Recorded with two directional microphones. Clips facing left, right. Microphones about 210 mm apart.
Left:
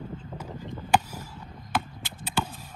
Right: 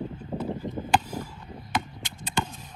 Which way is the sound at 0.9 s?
10° left (ahead or behind).